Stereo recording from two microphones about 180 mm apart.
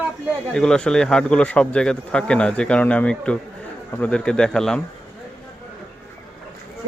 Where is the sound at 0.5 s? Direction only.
5° left (ahead or behind).